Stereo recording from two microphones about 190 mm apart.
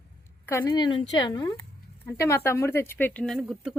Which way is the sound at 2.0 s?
15° left (ahead or behind).